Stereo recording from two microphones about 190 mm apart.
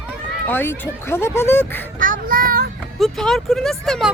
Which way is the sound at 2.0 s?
45° right (ahead or behind).